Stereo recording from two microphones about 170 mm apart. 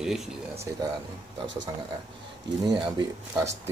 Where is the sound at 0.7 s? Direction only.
15° right (ahead or behind).